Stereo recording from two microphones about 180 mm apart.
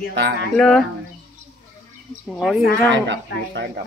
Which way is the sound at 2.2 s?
Centre (ahead or behind).